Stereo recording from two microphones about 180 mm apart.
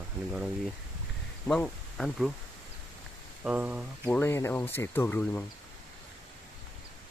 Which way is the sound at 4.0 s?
10° left (ahead or behind).